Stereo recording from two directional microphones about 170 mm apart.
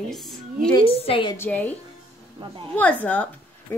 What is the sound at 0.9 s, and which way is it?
Speech, 35° left (ahead or behind).